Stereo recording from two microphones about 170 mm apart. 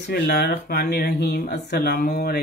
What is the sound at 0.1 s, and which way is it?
Speech, 65° left (ahead or behind).